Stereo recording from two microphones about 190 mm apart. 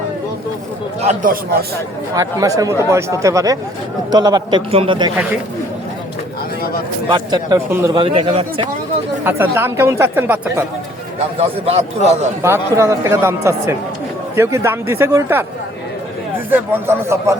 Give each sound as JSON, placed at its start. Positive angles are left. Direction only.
{"t": 1.0, "sound": "a man's voice", "side_deg": -45}
{"t": 2.1, "sound": "a man's voice", "side_deg": -20}
{"t": 7.1, "sound": "a man's voice", "side_deg": -20}
{"t": 8.0, "sound": "a man's voice", "side_deg": -30}
{"t": 9.2, "sound": "speech", "side_deg": -10}
{"t": 11.3, "sound": "a man's voice", "side_deg": -35}
{"t": 12.4, "sound": "speech", "side_deg": -15}
{"t": 16.5, "sound": "speech", "side_deg": -10}